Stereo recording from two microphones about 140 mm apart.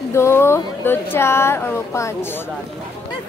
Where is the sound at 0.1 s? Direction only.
20° left (ahead or behind).